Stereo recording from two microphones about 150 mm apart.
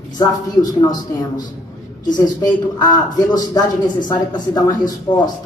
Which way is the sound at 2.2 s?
25° left (ahead or behind).